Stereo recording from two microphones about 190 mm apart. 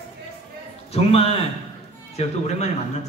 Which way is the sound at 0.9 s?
30° left (ahead or behind).